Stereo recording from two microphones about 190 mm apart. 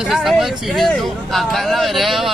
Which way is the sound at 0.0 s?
Centre (ahead or behind).